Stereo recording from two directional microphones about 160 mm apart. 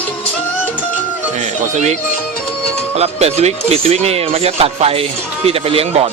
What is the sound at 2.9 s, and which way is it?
Speech, 40° right (ahead or behind).